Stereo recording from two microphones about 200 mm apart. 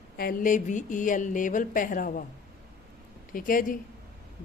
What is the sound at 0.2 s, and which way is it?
A woman's voice, 45° left (ahead or behind).